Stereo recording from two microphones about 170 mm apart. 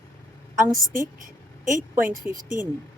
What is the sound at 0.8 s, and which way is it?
Speech, 55° right (ahead or behind).